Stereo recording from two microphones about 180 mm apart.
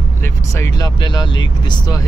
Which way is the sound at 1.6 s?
25° left (ahead or behind).